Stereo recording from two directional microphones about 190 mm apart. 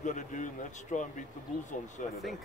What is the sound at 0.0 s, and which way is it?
Speech, 40° left (ahead or behind).